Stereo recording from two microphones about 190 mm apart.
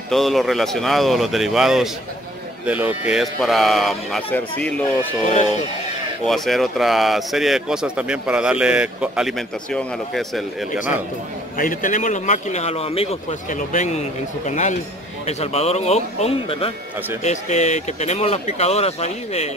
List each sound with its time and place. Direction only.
0.1 s speech: centre (ahead or behind)
5.2 s speech: 35° left (ahead or behind)
6.2 s speech: centre (ahead or behind)
11.5 s speech: 45° left (ahead or behind)